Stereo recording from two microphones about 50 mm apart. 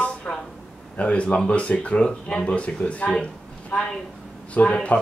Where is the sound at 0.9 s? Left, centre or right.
Left.